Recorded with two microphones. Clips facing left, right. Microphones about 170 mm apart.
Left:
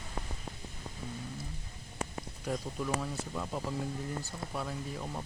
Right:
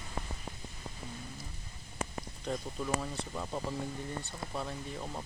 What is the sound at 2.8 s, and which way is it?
Speech, 10° right (ahead or behind).